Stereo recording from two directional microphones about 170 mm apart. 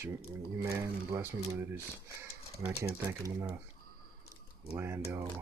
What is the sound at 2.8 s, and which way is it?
Speech, 20° right (ahead or behind).